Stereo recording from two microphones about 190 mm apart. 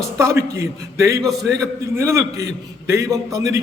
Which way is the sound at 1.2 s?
Centre (ahead or behind).